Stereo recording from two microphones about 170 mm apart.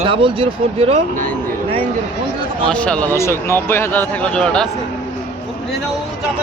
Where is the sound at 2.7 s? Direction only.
5° left (ahead or behind).